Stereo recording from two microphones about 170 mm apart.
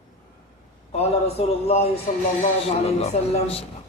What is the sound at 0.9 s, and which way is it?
Speech, 35° left (ahead or behind).